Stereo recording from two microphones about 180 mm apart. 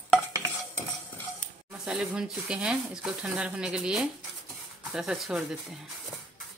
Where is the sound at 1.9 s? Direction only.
Centre (ahead or behind).